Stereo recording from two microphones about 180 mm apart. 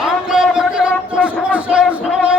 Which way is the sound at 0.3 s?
5° right (ahead or behind).